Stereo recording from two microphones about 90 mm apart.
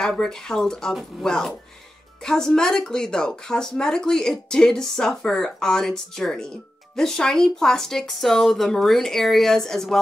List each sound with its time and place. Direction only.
0.0 s speech: 5° left (ahead or behind)